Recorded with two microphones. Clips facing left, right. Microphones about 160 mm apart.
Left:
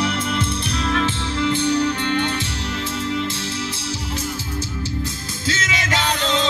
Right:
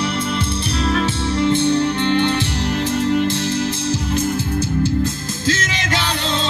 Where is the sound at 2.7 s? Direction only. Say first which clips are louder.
Right 8 dB; 40° right (ahead or behind).